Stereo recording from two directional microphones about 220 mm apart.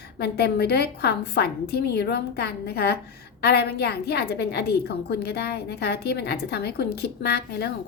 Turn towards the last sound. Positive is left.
turn(degrees=45)  # may be behind; listen again after turning